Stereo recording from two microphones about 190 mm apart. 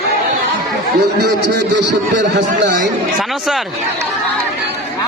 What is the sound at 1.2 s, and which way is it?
Speech, 65° right (ahead or behind).